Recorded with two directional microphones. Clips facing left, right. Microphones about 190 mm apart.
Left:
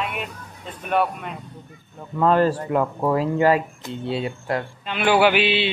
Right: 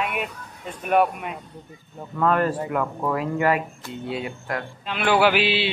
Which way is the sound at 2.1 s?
30° left (ahead or behind).